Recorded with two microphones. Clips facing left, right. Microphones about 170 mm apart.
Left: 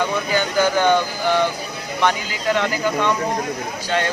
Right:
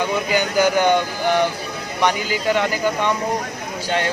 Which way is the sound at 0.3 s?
15° right (ahead or behind).